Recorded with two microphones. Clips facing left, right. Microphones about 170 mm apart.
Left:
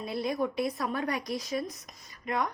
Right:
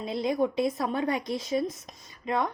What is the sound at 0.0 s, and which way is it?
A woman's voice, 20° right (ahead or behind).